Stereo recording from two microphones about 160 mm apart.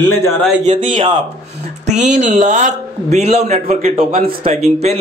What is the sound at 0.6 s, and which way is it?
A man's voice, 55° right (ahead or behind).